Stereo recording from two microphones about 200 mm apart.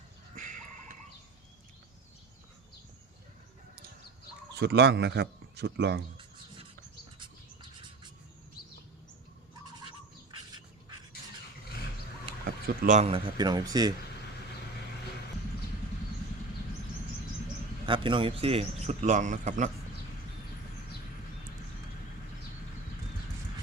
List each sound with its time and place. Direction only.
0.3 s a sound: 40° right (ahead or behind)
4.5 s a man's voice: 55° right (ahead or behind)
7.2 s bird: 25° right (ahead or behind)
12.5 s speech: 45° right (ahead or behind); by 13.9 s 20° right (ahead or behind)
17.8 s speech: 25° right (ahead or behind)